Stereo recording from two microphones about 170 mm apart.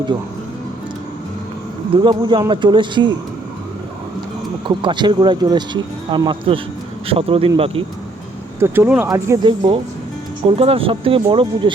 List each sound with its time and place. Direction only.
2.0 s speech: 30° right (ahead or behind)
4.8 s speech: 25° right (ahead or behind)
8.5 s speech: 15° right (ahead or behind); by 11.7 s 30° right (ahead or behind)